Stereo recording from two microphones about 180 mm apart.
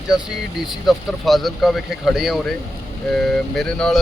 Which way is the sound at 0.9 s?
Centre (ahead or behind).